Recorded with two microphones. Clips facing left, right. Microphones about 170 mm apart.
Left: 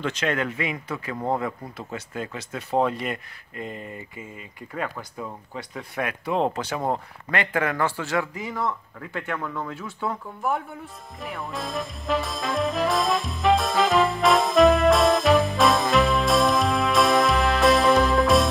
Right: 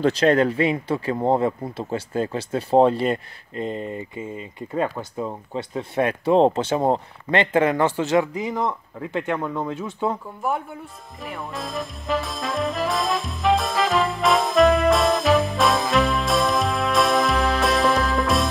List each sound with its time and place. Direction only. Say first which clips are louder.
0.0 s speech: right 9 dB; 35° right (ahead or behind)
10.4 s speech: right 1 dB; centre (ahead or behind)
11.1 s music: right 1 dB; centre (ahead or behind)